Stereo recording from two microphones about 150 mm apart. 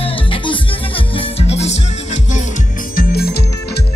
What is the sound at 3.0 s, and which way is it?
Music, 90° left.